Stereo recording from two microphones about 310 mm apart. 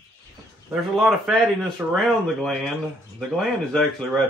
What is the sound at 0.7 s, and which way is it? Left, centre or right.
A man's voice, centre.